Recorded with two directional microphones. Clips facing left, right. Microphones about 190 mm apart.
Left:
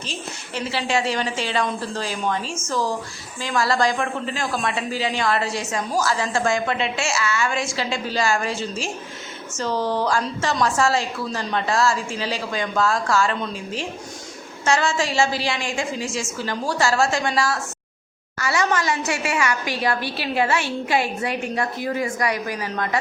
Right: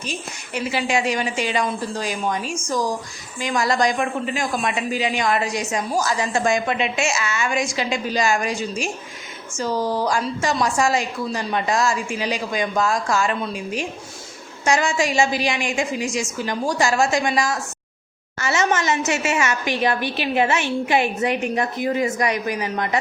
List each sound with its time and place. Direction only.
0.0 s a woman's voice: 15° right (ahead or behind)